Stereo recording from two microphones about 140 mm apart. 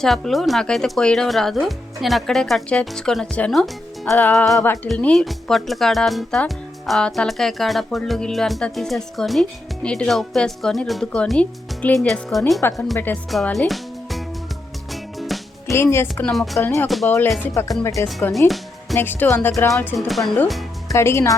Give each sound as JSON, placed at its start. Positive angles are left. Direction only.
{"t": 0.0, "sound": "speech", "side_deg": 0}
{"t": 4.6, "sound": "a woman's voice", "side_deg": 15}
{"t": 15.2, "sound": "music", "side_deg": 0}
{"t": 15.7, "sound": "a woman's voice", "side_deg": 20}
{"t": 16.2, "sound": "speech", "side_deg": 5}
{"t": 16.6, "sound": "a woman's voice", "side_deg": 20}
{"t": 18.3, "sound": "music", "side_deg": 0}
{"t": 18.9, "sound": "speech", "side_deg": 15}
{"t": 19.7, "sound": "speech", "side_deg": 0}
{"t": 20.5, "sound": "music", "side_deg": 0}
{"t": 20.9, "sound": "speech", "side_deg": 20}